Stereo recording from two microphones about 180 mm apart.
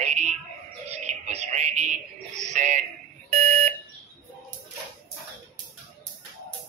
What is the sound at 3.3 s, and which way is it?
Alarm, 40° right (ahead or behind).